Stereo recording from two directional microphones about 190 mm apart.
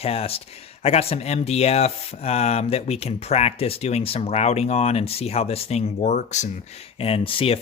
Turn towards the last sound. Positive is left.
turn(degrees=30)  # may be behind; listen again after turning